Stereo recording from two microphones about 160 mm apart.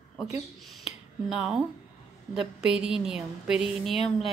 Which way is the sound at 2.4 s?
5° right (ahead or behind).